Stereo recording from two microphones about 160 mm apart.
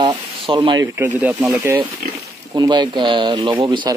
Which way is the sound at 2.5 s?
25° right (ahead or behind).